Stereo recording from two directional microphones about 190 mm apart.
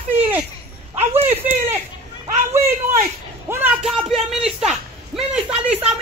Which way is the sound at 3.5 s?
10° right (ahead or behind).